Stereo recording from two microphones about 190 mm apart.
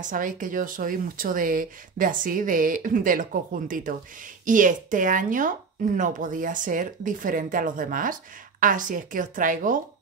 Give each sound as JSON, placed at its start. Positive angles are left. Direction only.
{"t": 0.0, "sound": "speech", "side_deg": -45}